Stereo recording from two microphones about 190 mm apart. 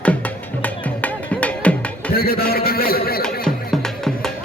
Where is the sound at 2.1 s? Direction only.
55° left (ahead or behind).